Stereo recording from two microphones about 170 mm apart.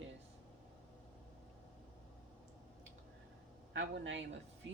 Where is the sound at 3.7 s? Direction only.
90° right.